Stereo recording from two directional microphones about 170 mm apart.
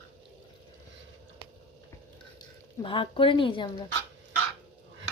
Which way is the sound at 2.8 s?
30° left (ahead or behind).